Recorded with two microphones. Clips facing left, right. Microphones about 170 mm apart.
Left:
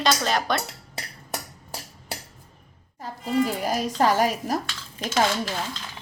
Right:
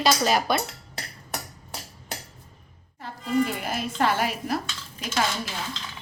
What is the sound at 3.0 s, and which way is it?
A woman's voice, 40° left (ahead or behind).